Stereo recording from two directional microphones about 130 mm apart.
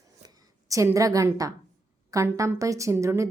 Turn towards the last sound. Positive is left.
turn(degrees=-20)  # may be behind; listen again after turning